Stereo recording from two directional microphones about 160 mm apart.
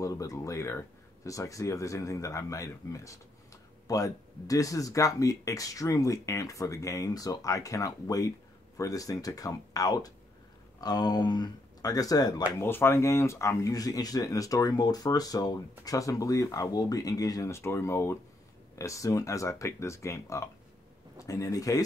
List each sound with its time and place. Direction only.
0.0 s speech: 20° left (ahead or behind)
12.5 s speech: 15° left (ahead or behind)